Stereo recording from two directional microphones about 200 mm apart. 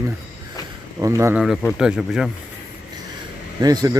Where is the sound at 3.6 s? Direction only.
20° right (ahead or behind).